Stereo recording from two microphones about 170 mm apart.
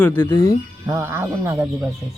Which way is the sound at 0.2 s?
20° left (ahead or behind).